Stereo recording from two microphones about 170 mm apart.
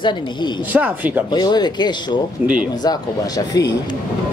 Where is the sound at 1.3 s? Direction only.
25° left (ahead or behind).